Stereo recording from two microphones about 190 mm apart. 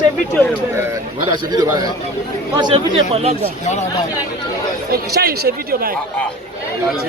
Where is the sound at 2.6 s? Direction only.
25° right (ahead or behind).